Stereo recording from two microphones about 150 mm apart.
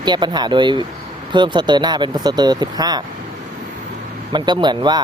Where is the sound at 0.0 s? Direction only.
30° right (ahead or behind).